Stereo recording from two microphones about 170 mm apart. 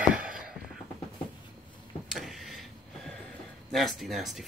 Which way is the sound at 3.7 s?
Centre (ahead or behind).